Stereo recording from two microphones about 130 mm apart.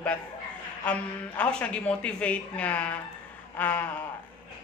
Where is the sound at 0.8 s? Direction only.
10° left (ahead or behind).